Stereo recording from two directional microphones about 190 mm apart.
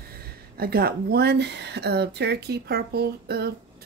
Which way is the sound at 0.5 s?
55° right (ahead or behind).